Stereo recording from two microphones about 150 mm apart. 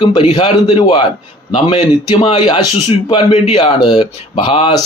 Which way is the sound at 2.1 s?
30° left (ahead or behind).